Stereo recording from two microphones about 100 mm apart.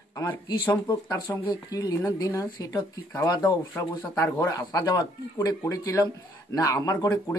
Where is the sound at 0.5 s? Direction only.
50° left (ahead or behind).